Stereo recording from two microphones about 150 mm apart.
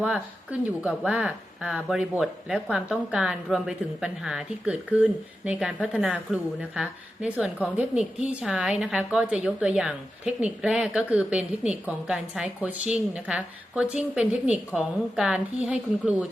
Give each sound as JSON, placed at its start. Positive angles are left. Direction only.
{"t": 0.8, "sound": "a woman's voice", "side_deg": -10}